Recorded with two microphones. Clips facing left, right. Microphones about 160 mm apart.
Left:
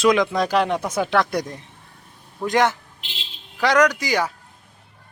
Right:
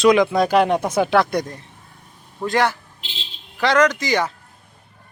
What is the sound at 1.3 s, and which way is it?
A man's voice, 15° left (ahead or behind).